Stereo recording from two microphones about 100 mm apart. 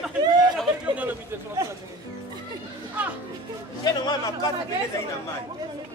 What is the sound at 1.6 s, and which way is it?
Speech, 25° right (ahead or behind).